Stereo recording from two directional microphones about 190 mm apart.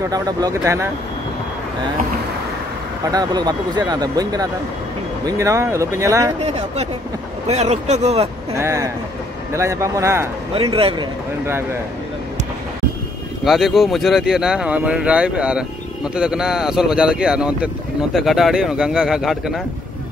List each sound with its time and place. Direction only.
0.1 s speech: 20° right (ahead or behind)
3.1 s speech: 20° right (ahead or behind)
6.4 s speech: 35° right (ahead or behind)
8.5 s speech: 15° right (ahead or behind)
10.5 s speech: 30° right (ahead or behind)
13.4 s speech: centre (ahead or behind)